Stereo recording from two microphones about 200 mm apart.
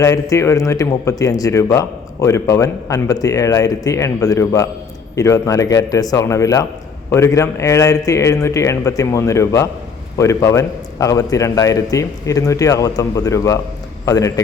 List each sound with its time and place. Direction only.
0.0 s a man's voice: 15° left (ahead or behind)